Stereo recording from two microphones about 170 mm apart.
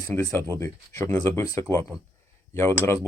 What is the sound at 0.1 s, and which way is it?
Speech, 10° left (ahead or behind).